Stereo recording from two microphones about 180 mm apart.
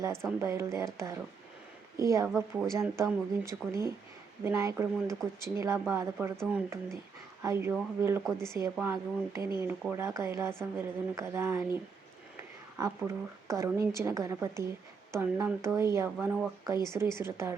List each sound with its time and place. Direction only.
0.0 s a woman's voice: 15° right (ahead or behind)
2.3 s speech: centre (ahead or behind)
2.7 s a woman's voice: 15° right (ahead or behind)
12.7 s a woman's voice: 15° right (ahead or behind)